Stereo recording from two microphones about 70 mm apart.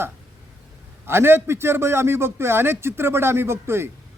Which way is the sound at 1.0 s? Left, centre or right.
Right.